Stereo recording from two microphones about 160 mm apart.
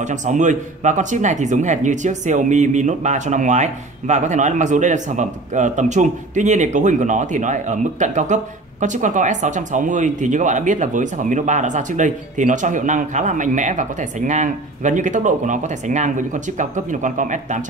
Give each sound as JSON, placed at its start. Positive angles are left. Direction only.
{"t": 0.0, "sound": "speech", "side_deg": -50}